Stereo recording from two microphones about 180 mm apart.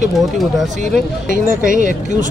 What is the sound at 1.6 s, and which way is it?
Speech, 45° right (ahead or behind).